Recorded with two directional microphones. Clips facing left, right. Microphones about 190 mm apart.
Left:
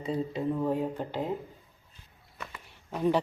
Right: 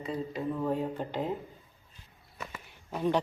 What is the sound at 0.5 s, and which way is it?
Speech, 15° left (ahead or behind).